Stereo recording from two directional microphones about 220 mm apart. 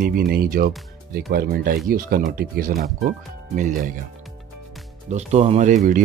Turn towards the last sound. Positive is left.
turn(degrees=-35)  # may be behind; listen again after turning